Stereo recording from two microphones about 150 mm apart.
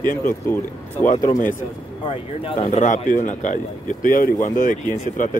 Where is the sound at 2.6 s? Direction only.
55° left (ahead or behind).